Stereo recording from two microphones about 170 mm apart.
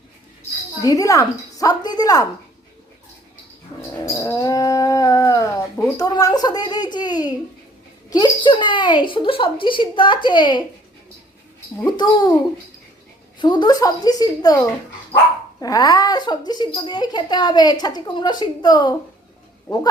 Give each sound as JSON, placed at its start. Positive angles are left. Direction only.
{"t": 0.8, "sound": "speech", "side_deg": 20}
{"t": 3.8, "sound": "dog", "side_deg": 20}
{"t": 6.1, "sound": "a sound", "side_deg": 20}
{"t": 8.1, "sound": "speech", "side_deg": 25}
{"t": 11.9, "sound": "speech", "side_deg": 25}
{"t": 13.4, "sound": "speech", "side_deg": 25}
{"t": 15.6, "sound": "speech", "side_deg": 20}